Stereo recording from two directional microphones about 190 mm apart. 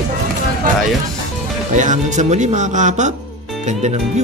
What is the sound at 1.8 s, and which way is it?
Speech, 40° right (ahead or behind).